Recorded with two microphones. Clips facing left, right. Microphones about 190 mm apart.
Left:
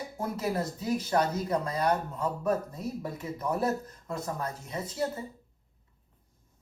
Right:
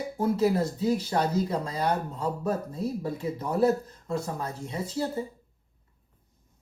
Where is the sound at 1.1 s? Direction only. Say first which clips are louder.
Right 1 dB; 25° right (ahead or behind).